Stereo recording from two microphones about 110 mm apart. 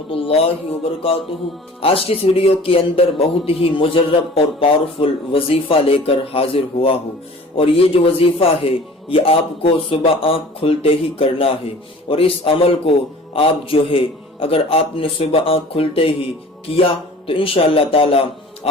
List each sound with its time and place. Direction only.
0.1 s a man's voice: 60° left (ahead or behind)
1.8 s a man's voice: 60° left (ahead or behind)